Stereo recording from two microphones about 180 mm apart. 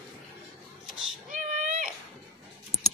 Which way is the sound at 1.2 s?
45° right (ahead or behind).